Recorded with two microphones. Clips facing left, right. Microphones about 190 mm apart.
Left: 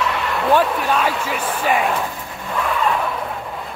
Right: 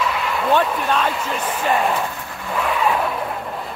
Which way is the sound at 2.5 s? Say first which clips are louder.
Even; 5° right (ahead or behind).